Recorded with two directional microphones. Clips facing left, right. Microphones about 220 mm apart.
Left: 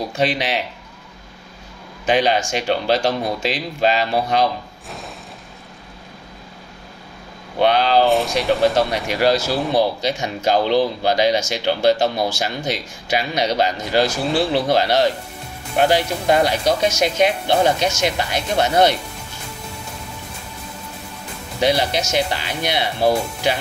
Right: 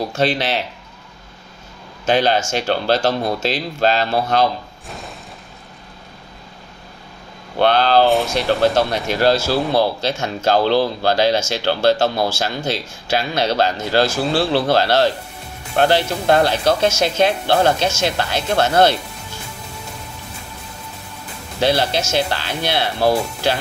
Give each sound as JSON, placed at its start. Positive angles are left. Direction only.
{"t": 0.1, "sound": "speech", "side_deg": 15}
{"t": 2.0, "sound": "speech", "side_deg": 15}
{"t": 4.8, "sound": "a sound", "side_deg": 0}
{"t": 7.6, "sound": "speech", "side_deg": 15}
{"t": 8.1, "sound": "speech", "side_deg": 0}
{"t": 8.5, "sound": "speech", "side_deg": 15}
{"t": 21.5, "sound": "speech", "side_deg": 15}